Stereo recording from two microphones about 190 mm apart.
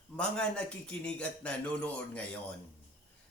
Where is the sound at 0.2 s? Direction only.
5° left (ahead or behind).